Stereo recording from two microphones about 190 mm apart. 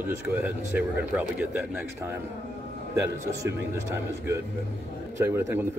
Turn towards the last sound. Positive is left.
turn(degrees=-15)  # may be behind; listen again after turning